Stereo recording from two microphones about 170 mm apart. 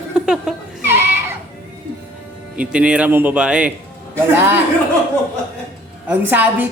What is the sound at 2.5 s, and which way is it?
Speech, 5° right (ahead or behind).